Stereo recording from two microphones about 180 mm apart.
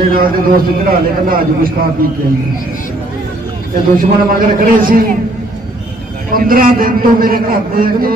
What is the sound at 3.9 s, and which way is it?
A man's voice, 50° right (ahead or behind).